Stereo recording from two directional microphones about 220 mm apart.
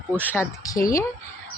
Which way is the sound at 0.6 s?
15° left (ahead or behind).